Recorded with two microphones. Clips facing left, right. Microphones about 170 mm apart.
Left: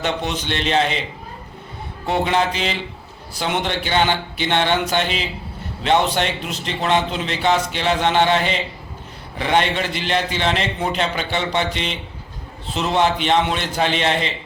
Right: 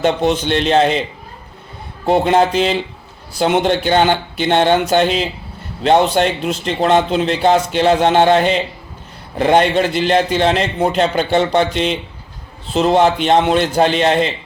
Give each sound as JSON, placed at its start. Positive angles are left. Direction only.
{"t": 0.0, "sound": "a man's voice", "side_deg": -45}
{"t": 2.0, "sound": "a man's voice", "side_deg": -45}